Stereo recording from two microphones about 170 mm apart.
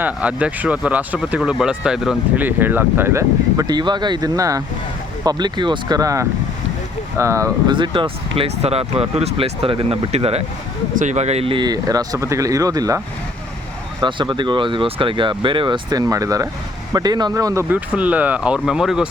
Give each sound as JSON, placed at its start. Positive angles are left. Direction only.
{"t": 0.0, "sound": "speech", "side_deg": -5}
{"t": 7.8, "sound": "speech", "side_deg": -30}
{"t": 14.0, "sound": "speech", "side_deg": -25}